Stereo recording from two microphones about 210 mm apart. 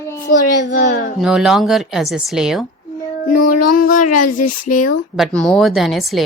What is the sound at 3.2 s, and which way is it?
Speech, 40° left (ahead or behind).